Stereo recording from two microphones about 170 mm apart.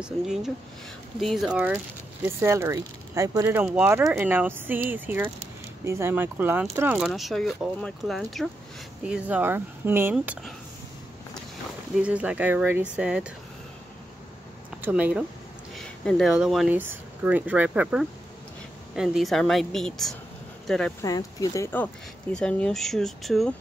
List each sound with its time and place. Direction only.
0.0 s speech: 5° right (ahead or behind)
7.0 s speech: centre (ahead or behind)
11.9 s speech: 5° right (ahead or behind)
14.8 s speech: 10° right (ahead or behind)
21.0 s speech: 20° left (ahead or behind)
22.3 s speech: 5° left (ahead or behind)